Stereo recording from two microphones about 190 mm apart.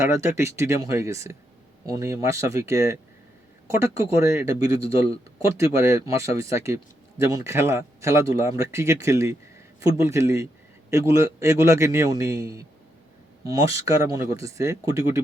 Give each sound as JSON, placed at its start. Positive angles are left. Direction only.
{"t": 0.0, "sound": "speech", "side_deg": -15}